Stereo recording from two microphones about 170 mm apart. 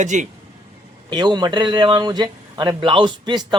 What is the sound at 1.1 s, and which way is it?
Speech, 25° right (ahead or behind).